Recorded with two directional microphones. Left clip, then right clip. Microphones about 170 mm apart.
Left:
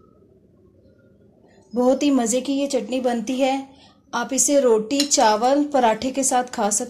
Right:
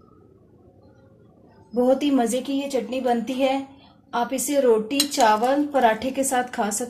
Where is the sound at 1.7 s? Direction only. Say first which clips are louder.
Left 1 dB; 40° left (ahead or behind).